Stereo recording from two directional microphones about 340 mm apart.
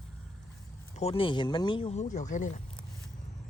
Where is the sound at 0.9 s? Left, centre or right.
Centre.